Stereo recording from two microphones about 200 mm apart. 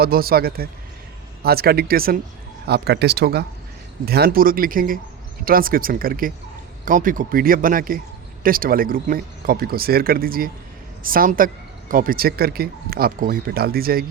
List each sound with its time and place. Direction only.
0.0 s speech: 50° right (ahead or behind)